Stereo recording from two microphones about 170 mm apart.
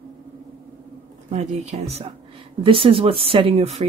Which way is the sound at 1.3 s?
40° right (ahead or behind).